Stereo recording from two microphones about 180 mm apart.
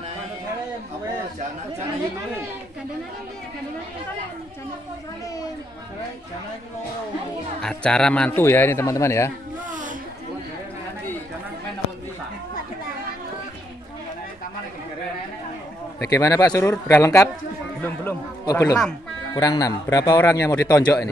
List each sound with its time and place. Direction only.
7.6 s a man's voice: 5° left (ahead or behind)
9.7 s a sound: 45° right (ahead or behind)
16.0 s speech: 20° left (ahead or behind)
18.4 s speech: 20° left (ahead or behind)